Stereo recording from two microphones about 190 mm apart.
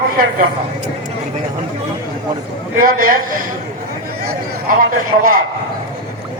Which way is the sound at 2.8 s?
50° right (ahead or behind).